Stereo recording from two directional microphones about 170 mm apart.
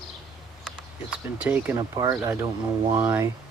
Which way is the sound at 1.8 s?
20° right (ahead or behind).